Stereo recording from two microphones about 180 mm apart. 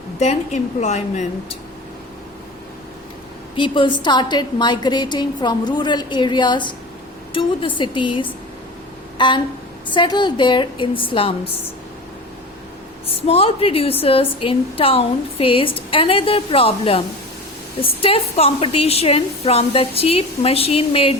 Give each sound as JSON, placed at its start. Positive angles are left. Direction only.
{"t": 0.2, "sound": "a woman's voice", "side_deg": 40}
{"t": 3.5, "sound": "a woman's voice", "side_deg": 25}
{"t": 9.1, "sound": "a sound", "side_deg": 25}
{"t": 9.9, "sound": "a woman's voice", "side_deg": 25}
{"t": 13.2, "sound": "a woman's voice", "side_deg": 30}